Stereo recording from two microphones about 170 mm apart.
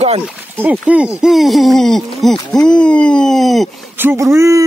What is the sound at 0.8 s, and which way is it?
Speech, 5° right (ahead or behind).